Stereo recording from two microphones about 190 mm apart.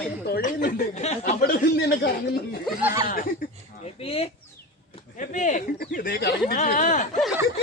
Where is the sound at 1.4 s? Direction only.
50° left (ahead or behind).